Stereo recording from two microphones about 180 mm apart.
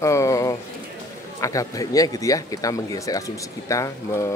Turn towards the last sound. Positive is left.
turn(degrees=15)  # may be behind; listen again after turning